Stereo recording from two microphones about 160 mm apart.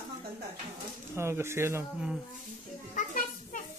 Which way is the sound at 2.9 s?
55° left (ahead or behind).